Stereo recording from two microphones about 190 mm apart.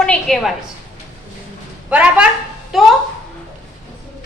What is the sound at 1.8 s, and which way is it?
A woman's voice, 5° right (ahead or behind).